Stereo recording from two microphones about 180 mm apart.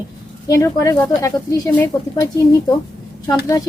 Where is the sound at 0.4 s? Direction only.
15° left (ahead or behind).